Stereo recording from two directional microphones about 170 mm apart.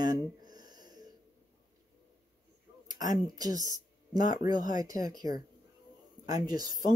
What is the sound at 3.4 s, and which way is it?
Speech, 20° right (ahead or behind).